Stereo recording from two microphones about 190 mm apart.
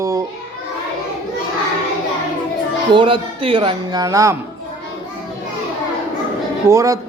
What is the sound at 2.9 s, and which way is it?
Speech, 25° right (ahead or behind).